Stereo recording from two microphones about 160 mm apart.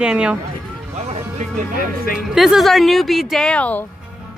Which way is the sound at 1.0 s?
45° right (ahead or behind).